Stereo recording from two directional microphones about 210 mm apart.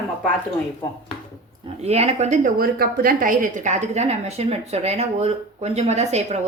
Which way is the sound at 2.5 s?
45° right (ahead or behind).